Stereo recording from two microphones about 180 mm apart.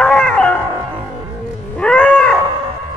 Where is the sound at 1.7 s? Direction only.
5° left (ahead or behind).